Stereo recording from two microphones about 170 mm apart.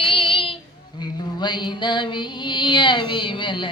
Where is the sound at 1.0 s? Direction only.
25° left (ahead or behind).